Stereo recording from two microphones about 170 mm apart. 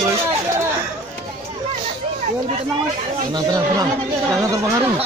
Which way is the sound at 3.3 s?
25° right (ahead or behind).